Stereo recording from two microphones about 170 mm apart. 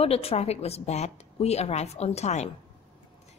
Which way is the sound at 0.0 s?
35° left (ahead or behind).